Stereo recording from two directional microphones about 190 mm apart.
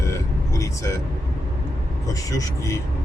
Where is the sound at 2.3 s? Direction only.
15° left (ahead or behind).